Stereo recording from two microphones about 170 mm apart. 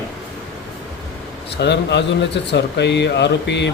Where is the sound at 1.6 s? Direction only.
90° left.